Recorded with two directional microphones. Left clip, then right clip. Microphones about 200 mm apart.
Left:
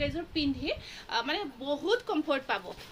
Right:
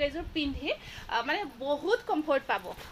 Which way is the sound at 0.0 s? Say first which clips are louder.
Right 1 dB; 10° left (ahead or behind).